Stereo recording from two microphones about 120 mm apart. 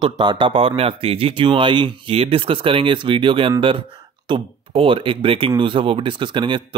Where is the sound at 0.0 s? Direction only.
40° right (ahead or behind).